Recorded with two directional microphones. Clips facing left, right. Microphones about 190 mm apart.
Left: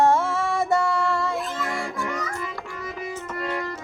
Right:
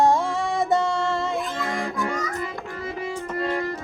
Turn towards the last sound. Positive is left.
turn(degrees=-35)  # may be behind; listen again after turning